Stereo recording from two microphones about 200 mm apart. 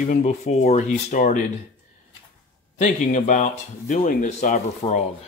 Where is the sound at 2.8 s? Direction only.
40° left (ahead or behind).